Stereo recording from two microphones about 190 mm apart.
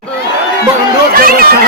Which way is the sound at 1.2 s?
50° right (ahead or behind).